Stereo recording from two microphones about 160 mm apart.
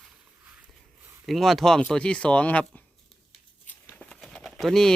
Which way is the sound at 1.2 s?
Centre (ahead or behind).